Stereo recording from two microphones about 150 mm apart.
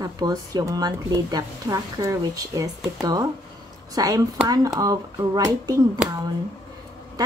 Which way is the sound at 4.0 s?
25° right (ahead or behind).